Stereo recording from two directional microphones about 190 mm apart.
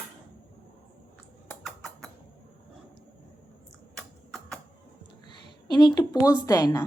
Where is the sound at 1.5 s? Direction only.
Centre (ahead or behind).